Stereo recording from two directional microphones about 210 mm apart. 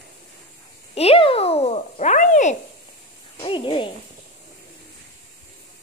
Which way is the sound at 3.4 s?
20° left (ahead or behind).